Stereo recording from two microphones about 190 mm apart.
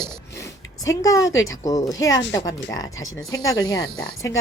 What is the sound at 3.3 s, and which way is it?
Speech, 20° left (ahead or behind).